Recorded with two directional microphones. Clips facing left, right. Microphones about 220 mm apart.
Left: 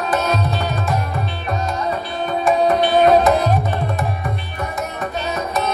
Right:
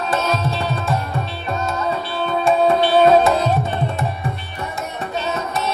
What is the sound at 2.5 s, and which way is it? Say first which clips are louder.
Tabla: even; 30° right (ahead or behind).